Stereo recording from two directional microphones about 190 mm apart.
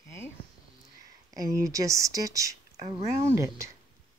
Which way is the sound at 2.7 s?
35° right (ahead or behind).